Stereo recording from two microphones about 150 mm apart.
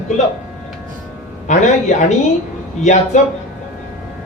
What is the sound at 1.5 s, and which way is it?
Speech, 50° left (ahead or behind).